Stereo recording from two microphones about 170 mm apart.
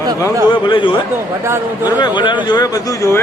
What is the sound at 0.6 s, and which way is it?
A man's voice, 30° left (ahead or behind).